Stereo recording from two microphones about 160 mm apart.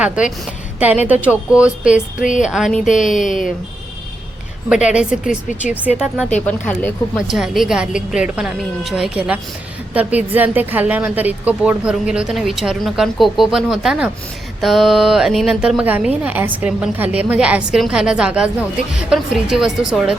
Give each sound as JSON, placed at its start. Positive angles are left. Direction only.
{"t": 0.0, "sound": "a woman's voice", "side_deg": -5}
{"t": 2.2, "sound": "a woman's voice", "side_deg": 50}
{"t": 2.5, "sound": "a woman's voice", "side_deg": 0}
{"t": 2.8, "sound": "a woman's voice", "side_deg": 50}
{"t": 4.9, "sound": "a woman's voice", "side_deg": -5}
{"t": 6.4, "sound": "speech", "side_deg": 10}
{"t": 7.3, "sound": "a woman's voice", "side_deg": 0}